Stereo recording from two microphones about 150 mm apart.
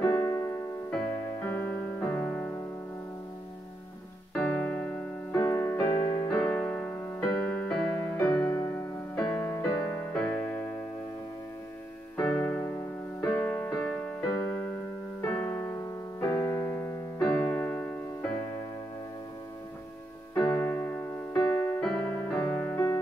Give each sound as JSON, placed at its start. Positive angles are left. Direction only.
{"t": 0.0, "sound": "keyboard", "side_deg": 15}
{"t": 0.9, "sound": "music", "side_deg": 10}
{"t": 4.3, "sound": "keyboard", "side_deg": 10}
{"t": 8.2, "sound": "music", "side_deg": 20}
{"t": 9.1, "sound": "music", "side_deg": 5}
{"t": 9.5, "sound": "keyboard", "side_deg": 15}
{"t": 12.2, "sound": "keyboard", "side_deg": 10}
{"t": 15.2, "sound": "music", "side_deg": 10}
{"t": 17.3, "sound": "piano", "side_deg": 15}
{"t": 20.3, "sound": "keyboard", "side_deg": 15}
{"t": 21.7, "sound": "music", "side_deg": 5}